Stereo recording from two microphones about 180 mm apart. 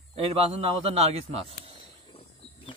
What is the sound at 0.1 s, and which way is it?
A man's voice, 35° right (ahead or behind).